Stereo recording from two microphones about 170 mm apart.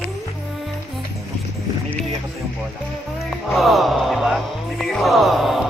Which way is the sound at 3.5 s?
Centre (ahead or behind).